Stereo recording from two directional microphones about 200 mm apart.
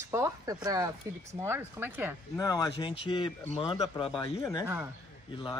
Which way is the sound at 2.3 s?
20° left (ahead or behind).